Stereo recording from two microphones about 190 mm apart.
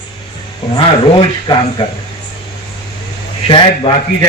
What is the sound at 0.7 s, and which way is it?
A man's voice, 25° left (ahead or behind).